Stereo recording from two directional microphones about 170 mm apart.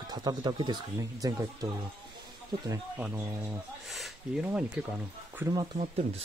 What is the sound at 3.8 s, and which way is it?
Speech, centre (ahead or behind).